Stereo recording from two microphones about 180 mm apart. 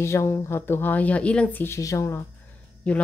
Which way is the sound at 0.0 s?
15° left (ahead or behind).